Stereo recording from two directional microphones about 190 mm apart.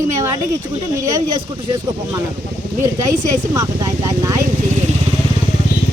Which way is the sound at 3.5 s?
15° right (ahead or behind).